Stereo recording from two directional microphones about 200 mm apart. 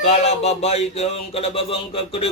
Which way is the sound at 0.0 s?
30° left (ahead or behind).